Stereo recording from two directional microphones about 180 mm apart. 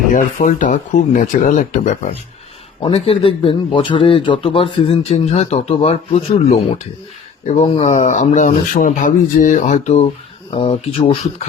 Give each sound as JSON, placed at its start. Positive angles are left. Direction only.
{"t": 0.1, "sound": "speech", "side_deg": 45}
{"t": 2.8, "sound": "speech", "side_deg": 30}